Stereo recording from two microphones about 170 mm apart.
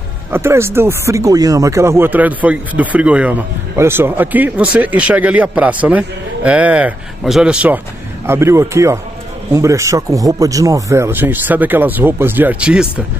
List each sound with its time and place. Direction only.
0.3 s speech: 15° right (ahead or behind)